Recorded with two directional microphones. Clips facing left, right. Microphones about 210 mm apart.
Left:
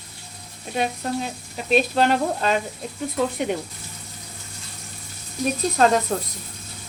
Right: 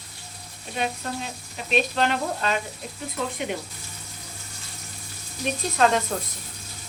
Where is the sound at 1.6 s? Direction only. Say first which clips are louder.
Left 5 dB; 40° left (ahead or behind).